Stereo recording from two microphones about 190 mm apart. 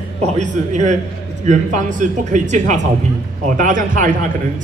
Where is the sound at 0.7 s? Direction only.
40° right (ahead or behind).